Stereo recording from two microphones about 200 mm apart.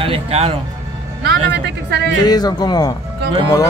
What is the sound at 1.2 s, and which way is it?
Speech, 55° right (ahead or behind).